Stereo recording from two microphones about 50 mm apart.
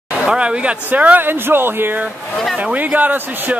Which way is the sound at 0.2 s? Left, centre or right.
Centre.